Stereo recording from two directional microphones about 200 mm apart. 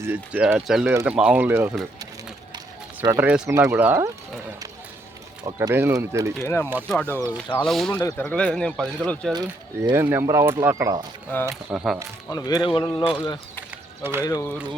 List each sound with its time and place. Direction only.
0.0 s speech: 10° right (ahead or behind)
3.2 s speech: 5° right (ahead or behind)
5.5 s speech: 15° right (ahead or behind)
6.4 s speech: 10° left (ahead or behind)
7.1 s speech: 10° right (ahead or behind)
7.5 s speech: centre (ahead or behind)
9.3 s speech: 20° right (ahead or behind)
11.4 s speech: 5° right (ahead or behind)
12.3 s speech: 20° left (ahead or behind)
14.0 s speech: 10° right (ahead or behind)
14.3 s speech: 20° left (ahead or behind)